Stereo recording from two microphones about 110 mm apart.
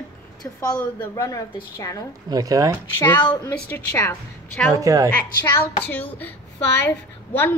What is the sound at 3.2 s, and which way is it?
Speech, 45° left (ahead or behind).